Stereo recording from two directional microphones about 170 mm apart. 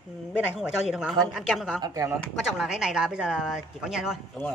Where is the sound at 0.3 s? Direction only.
5° right (ahead or behind).